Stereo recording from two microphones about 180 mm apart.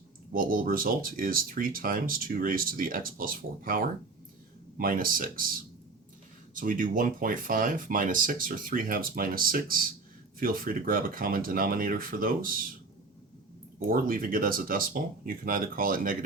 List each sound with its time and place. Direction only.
0.3 s speech: 50° right (ahead or behind)
13.7 s speech: 50° right (ahead or behind)